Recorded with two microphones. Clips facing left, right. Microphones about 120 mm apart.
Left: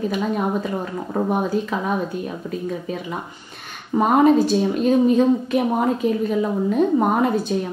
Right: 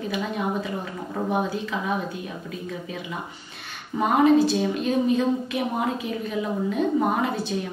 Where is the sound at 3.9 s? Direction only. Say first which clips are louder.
Left 3 dB; 45° left (ahead or behind).